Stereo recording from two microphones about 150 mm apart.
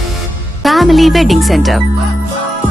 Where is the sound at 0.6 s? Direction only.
Centre (ahead or behind).